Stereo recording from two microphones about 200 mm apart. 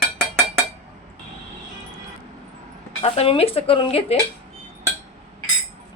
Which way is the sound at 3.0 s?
30° left (ahead or behind).